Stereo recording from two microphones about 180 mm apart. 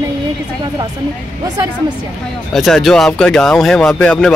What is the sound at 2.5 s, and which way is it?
Speech, centre (ahead or behind).